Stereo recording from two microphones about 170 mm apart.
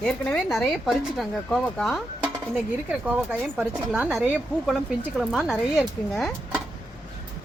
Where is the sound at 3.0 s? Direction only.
10° right (ahead or behind).